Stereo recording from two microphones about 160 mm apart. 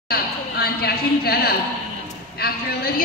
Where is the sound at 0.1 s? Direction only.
75° left (ahead or behind).